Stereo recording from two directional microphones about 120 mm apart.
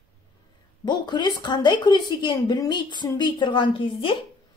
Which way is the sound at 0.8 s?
40° left (ahead or behind).